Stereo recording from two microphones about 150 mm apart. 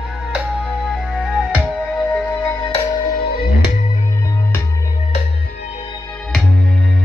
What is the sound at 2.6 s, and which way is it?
Music, 40° left (ahead or behind).